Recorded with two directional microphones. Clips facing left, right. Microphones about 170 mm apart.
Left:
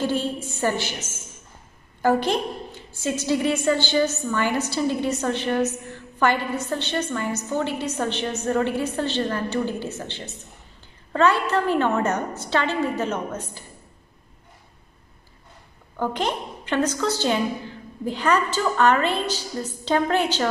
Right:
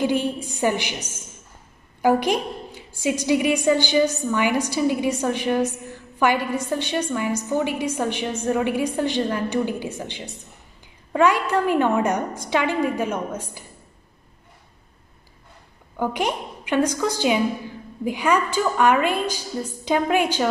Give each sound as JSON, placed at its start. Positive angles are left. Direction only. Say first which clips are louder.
{"t": 0.0, "sound": "a woman's voice", "louder": "right 2 dB", "side_deg": -15}
{"t": 16.0, "sound": "a woman's voice", "louder": "right 1 dB", "side_deg": -10}